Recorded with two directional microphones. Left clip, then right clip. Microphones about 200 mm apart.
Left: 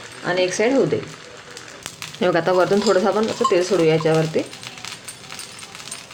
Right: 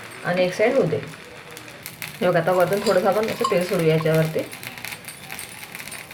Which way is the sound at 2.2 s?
45° left (ahead or behind).